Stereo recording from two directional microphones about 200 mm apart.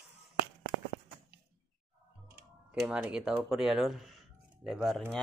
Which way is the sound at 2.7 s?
5° right (ahead or behind).